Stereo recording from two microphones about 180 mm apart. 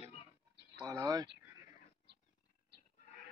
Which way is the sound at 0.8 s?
20° right (ahead or behind).